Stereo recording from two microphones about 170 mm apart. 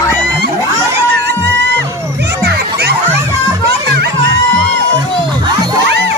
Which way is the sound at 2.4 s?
75° right (ahead or behind).